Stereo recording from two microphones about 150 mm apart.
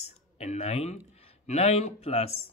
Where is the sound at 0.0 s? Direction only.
45° left (ahead or behind).